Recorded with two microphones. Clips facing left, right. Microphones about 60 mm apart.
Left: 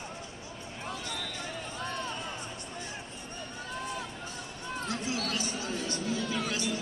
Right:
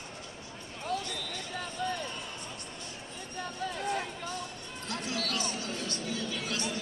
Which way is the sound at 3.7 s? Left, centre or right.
Right.